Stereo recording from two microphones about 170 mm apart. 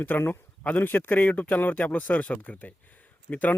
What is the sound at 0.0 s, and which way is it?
Speech, 10° left (ahead or behind).